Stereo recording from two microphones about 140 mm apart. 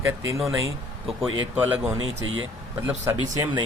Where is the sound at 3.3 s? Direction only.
25° right (ahead or behind).